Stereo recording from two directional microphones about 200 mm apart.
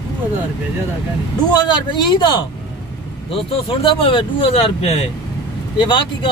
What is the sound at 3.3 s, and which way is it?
Speech, 25° left (ahead or behind).